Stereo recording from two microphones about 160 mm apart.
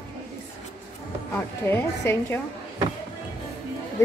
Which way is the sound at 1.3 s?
10° left (ahead or behind).